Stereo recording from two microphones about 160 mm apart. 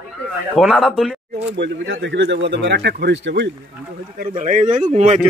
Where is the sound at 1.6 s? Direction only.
90° right.